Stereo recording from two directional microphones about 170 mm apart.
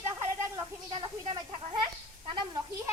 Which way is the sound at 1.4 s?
30° right (ahead or behind).